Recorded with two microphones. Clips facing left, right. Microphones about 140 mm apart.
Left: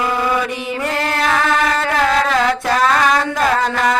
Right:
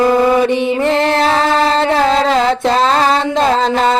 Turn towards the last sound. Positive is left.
turn(degrees=-25)  # may be behind; listen again after turning